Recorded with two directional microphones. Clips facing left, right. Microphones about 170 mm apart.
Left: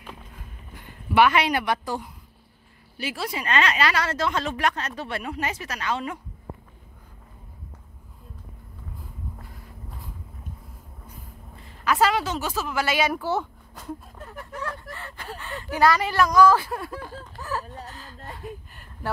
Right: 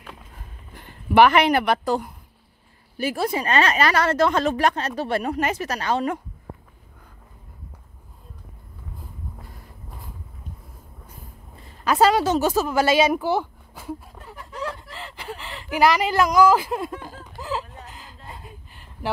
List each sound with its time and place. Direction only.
1.3 s speech: 55° right (ahead or behind)
3.0 s speech: 50° right (ahead or behind)
3.3 s speech: 35° right (ahead or behind)
11.8 s speech: 30° right (ahead or behind); by 16.9 s 15° right (ahead or behind)
17.4 s music: 15° right (ahead or behind)
17.8 s a sound: 15° right (ahead or behind)